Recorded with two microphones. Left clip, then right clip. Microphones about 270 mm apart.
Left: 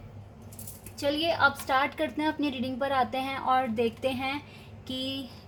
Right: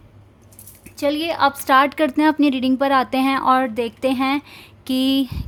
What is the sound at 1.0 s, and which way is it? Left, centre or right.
A woman's voice, right.